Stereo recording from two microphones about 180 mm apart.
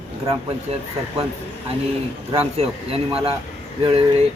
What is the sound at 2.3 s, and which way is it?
A man's voice, 35° right (ahead or behind).